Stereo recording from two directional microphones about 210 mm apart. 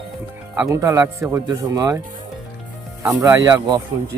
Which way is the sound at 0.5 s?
10° right (ahead or behind).